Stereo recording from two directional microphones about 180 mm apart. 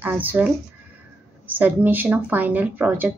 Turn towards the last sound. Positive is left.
turn(degrees=-10)  # may be behind; listen again after turning